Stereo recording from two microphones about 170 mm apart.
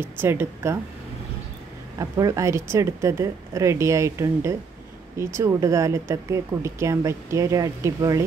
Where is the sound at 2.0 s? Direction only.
20° right (ahead or behind).